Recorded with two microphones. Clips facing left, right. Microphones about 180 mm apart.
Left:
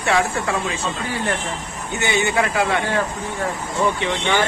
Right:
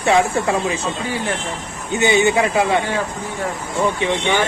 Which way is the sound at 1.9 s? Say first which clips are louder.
Right 5 dB; 20° right (ahead or behind).